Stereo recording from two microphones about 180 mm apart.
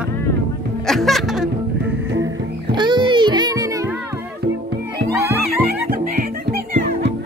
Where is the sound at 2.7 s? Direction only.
25° right (ahead or behind).